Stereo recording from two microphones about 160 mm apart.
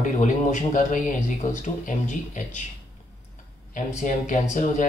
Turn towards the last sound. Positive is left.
turn(degrees=50)  # may be behind; listen again after turning